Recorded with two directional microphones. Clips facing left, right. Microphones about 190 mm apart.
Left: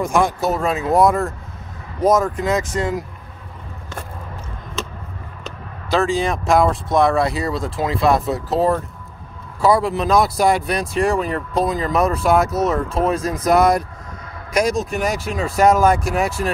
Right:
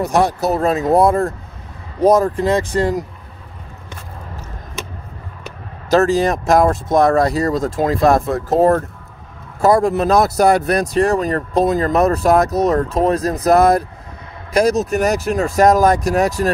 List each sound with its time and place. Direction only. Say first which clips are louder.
0.0 s speech: right 2 dB; 35° right (ahead or behind)
5.9 s speech: right 5 dB; 40° right (ahead or behind)